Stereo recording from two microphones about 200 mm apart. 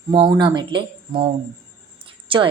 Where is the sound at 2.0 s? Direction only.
25° right (ahead or behind).